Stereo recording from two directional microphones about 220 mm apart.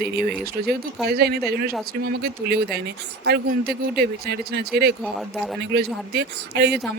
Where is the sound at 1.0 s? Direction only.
45° right (ahead or behind).